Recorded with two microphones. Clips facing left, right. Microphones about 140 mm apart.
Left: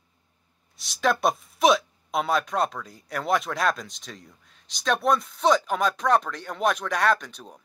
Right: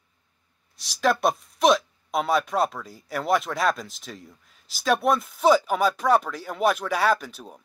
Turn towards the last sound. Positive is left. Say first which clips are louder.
# even
turn(degrees=-5)  # may be behind; listen again after turning